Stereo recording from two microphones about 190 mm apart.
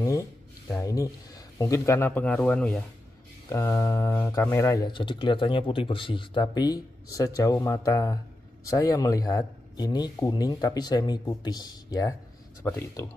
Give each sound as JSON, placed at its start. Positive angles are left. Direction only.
{"t": 0.0, "sound": "speech", "side_deg": 15}
{"t": 3.4, "sound": "speech", "side_deg": 15}